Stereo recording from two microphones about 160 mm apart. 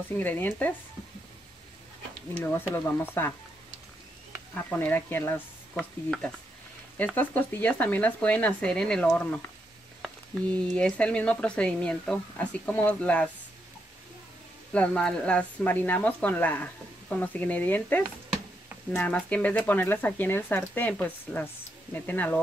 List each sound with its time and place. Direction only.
0.2 s speech: 10° left (ahead or behind)
2.3 s speech: 10° left (ahead or behind)
4.6 s speech: 10° left (ahead or behind)
14.7 s speech: 5° left (ahead or behind)